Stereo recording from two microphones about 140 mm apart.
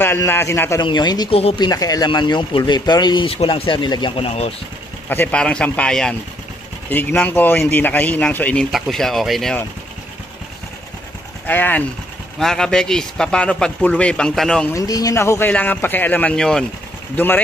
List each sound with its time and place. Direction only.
0.0 s a man's voice: 15° left (ahead or behind); by 4.3 s 35° left (ahead or behind)
4.3 s speech: 45° left (ahead or behind)
5.1 s speech: 10° left (ahead or behind)
8.7 s speech: centre (ahead or behind)
11.4 s speech: 15° left (ahead or behind)
14.7 s speech: 25° left (ahead or behind); by 16.6 s 5° left (ahead or behind)